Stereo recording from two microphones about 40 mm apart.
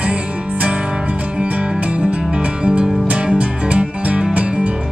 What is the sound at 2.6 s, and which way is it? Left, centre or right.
Music, right.